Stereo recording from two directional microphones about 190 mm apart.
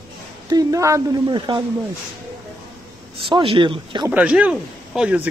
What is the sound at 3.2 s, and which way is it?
Speech, 25° right (ahead or behind).